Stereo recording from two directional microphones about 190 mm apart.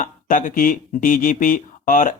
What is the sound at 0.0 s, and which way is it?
Speech, 45° left (ahead or behind).